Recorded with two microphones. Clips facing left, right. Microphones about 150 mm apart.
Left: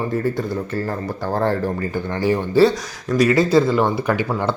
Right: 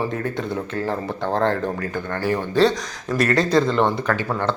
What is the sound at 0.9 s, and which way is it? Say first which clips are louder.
Speech: even; 5° left (ahead or behind).